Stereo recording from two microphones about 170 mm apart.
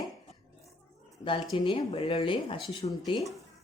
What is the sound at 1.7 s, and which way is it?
A woman's voice, 30° left (ahead or behind).